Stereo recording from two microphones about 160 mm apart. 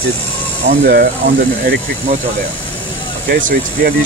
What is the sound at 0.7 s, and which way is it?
Speech, 70° right (ahead or behind).